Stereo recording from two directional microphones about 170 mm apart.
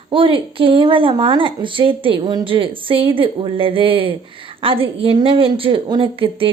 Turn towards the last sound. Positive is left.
turn(degrees=-30)  # may be behind; listen again after turning